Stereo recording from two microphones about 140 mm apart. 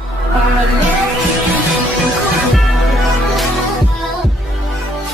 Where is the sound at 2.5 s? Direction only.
Centre (ahead or behind).